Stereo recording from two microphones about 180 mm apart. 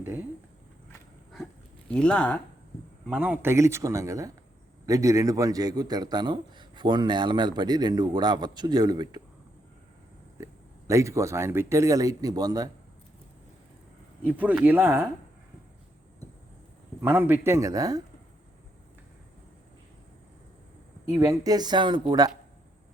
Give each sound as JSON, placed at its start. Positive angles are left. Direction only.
{"t": 1.9, "sound": "speech", "side_deg": 5}
{"t": 3.1, "sound": "a man's voice", "side_deg": -5}
{"t": 10.4, "sound": "speech", "side_deg": -15}
{"t": 14.3, "sound": "speech", "side_deg": -10}
{"t": 17.0, "sound": "speech", "side_deg": -10}
{"t": 21.1, "sound": "a man's voice", "side_deg": -20}